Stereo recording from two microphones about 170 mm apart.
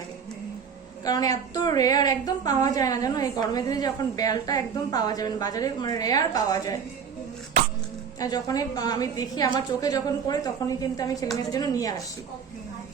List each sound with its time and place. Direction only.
1.0 s a woman's voice: 20° left (ahead or behind)
8.2 s a woman's voice: 20° left (ahead or behind)